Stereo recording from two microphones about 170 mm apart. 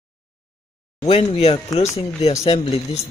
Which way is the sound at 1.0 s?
35° left (ahead or behind).